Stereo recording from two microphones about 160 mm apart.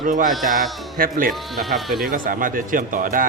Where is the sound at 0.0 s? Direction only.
55° right (ahead or behind).